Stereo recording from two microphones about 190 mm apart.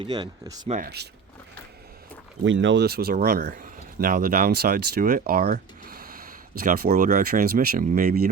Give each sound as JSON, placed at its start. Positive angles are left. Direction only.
{"t": 0.0, "sound": "speech", "side_deg": -20}
{"t": 0.7, "sound": "speech", "side_deg": -50}
{"t": 2.4, "sound": "speech", "side_deg": -75}